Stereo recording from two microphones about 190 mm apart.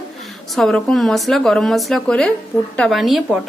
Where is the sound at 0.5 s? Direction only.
Centre (ahead or behind).